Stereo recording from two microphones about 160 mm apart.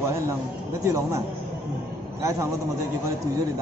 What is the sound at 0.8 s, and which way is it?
Speech, 20° right (ahead or behind).